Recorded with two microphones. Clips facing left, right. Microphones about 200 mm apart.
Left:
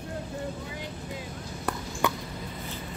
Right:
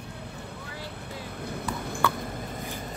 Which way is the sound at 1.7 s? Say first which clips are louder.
Right 3 dB; 60° right (ahead or behind).